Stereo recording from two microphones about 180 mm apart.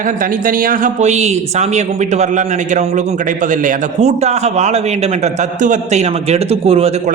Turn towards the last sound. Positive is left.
turn(degrees=-35)  # may be behind; listen again after turning